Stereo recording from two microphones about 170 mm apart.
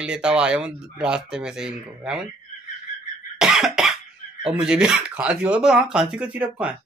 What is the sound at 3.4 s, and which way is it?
Cough, 5° right (ahead or behind).